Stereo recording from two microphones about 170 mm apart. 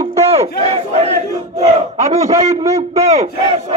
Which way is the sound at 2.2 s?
20° right (ahead or behind).